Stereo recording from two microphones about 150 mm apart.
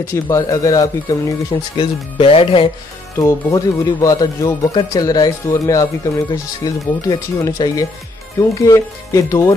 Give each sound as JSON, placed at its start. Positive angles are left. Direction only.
{"t": 0.0, "sound": "speech", "side_deg": 20}
{"t": 1.8, "sound": "speech", "side_deg": 40}
{"t": 3.2, "sound": "speech", "side_deg": 20}